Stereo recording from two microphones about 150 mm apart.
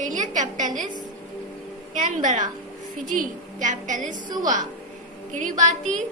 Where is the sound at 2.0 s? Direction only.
55° right (ahead or behind).